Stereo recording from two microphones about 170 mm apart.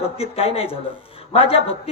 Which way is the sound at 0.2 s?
35° left (ahead or behind).